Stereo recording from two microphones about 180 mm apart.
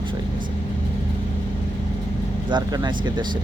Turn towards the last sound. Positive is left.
turn(degrees=-25)  # may be behind; listen again after turning